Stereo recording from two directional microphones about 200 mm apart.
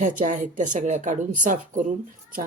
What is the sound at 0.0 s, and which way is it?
Speech, 40° right (ahead or behind).